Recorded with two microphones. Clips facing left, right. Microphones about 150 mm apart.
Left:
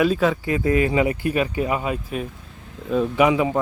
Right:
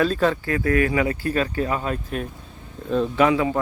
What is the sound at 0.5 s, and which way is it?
A man's voice, 20° left (ahead or behind).